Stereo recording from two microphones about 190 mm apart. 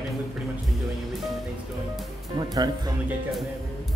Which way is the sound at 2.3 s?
20° right (ahead or behind).